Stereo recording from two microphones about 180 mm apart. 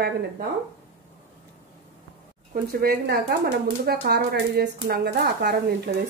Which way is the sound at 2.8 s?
60° right (ahead or behind).